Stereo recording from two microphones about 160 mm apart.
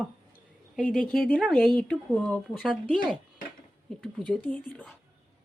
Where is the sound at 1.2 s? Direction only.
Centre (ahead or behind).